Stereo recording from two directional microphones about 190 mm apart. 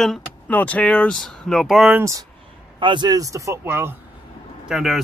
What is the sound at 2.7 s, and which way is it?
Speech, 25° right (ahead or behind).